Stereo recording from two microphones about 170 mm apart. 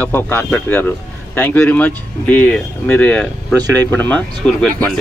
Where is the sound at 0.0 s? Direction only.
10° left (ahead or behind).